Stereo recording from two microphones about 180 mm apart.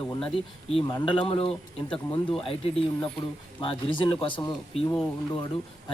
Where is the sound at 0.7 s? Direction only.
30° left (ahead or behind).